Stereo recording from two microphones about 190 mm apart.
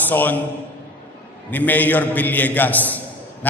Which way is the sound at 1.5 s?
10° left (ahead or behind).